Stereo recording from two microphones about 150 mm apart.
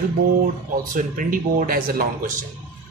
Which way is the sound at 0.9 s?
65° right (ahead or behind).